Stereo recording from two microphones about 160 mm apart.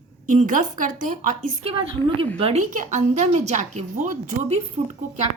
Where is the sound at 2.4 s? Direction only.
45° right (ahead or behind).